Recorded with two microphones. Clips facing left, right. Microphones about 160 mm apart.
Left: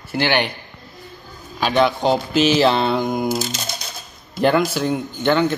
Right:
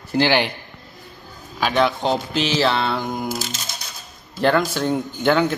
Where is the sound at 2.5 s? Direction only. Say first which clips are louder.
Left 2 dB; 20° left (ahead or behind).